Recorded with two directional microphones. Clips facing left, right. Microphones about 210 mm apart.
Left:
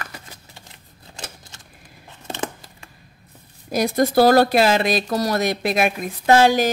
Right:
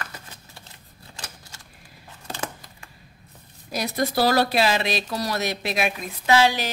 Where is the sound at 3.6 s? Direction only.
50° left (ahead or behind).